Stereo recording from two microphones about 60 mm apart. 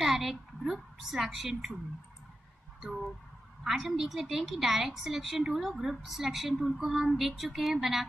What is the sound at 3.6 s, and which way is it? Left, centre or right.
A woman's voice, centre.